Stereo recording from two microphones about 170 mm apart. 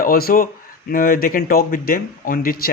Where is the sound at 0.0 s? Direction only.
60° left (ahead or behind).